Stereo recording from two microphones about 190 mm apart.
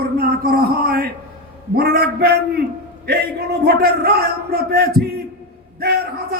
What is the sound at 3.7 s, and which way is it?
Speech, 55° right (ahead or behind).